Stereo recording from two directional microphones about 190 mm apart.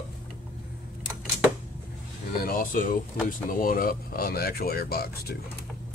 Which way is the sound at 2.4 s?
45° left (ahead or behind).